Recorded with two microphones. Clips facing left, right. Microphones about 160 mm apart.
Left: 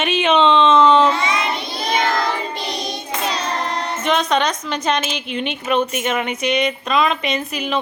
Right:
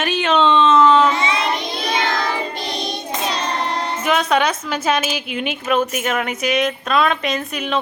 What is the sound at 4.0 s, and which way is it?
A woman's voice, 5° right (ahead or behind).